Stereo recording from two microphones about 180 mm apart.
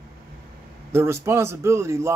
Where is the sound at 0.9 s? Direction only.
15° right (ahead or behind).